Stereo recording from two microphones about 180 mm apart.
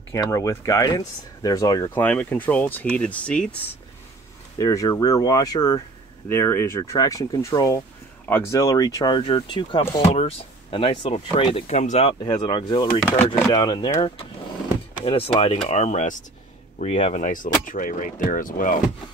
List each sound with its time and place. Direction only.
0.1 s speech: 15° left (ahead or behind)
2.0 s speech: 10° left (ahead or behind)
4.6 s speech: 20° left (ahead or behind); by 18.8 s 50° left (ahead or behind)